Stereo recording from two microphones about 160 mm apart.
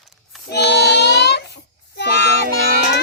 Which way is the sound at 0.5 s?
90° left.